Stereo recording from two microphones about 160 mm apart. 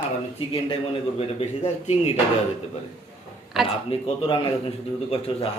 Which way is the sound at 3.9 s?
35° left (ahead or behind).